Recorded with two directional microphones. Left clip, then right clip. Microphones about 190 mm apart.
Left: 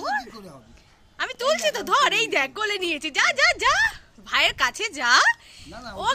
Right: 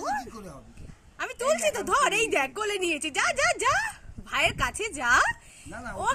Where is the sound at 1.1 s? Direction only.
5° right (ahead or behind).